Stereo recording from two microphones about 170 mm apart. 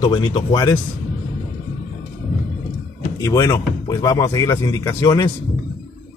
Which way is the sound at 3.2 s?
20° left (ahead or behind).